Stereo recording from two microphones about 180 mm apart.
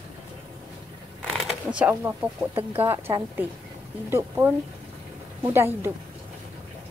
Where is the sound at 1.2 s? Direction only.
5° right (ahead or behind).